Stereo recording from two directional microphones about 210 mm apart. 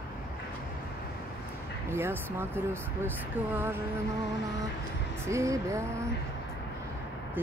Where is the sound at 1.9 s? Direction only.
10° right (ahead or behind).